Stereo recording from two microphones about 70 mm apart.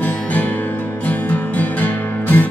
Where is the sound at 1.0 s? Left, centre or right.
Left.